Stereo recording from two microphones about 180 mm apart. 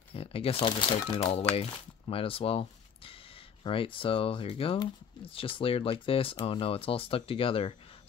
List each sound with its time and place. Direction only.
0.1 s speech: 30° left (ahead or behind)
3.6 s speech: 30° left (ahead or behind)